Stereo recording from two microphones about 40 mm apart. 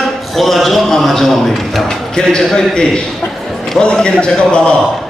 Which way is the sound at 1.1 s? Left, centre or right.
Centre.